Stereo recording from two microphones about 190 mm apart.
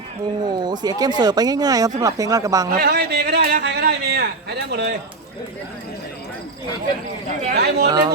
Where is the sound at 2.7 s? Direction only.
55° right (ahead or behind).